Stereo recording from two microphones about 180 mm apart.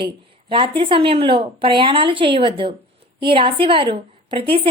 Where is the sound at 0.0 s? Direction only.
30° right (ahead or behind).